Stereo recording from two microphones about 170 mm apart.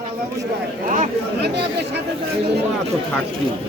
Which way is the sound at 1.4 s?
75° right (ahead or behind).